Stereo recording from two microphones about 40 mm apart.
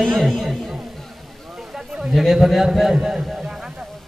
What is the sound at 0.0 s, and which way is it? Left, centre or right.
Speech, centre.